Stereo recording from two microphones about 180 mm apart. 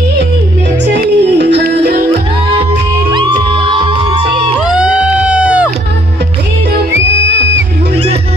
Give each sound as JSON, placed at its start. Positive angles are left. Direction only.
{"t": 0.9, "sound": "music", "side_deg": -70}
{"t": 3.1, "sound": "music", "side_deg": -25}
{"t": 7.2, "sound": "music", "side_deg": -75}
{"t": 7.9, "sound": "music", "side_deg": -35}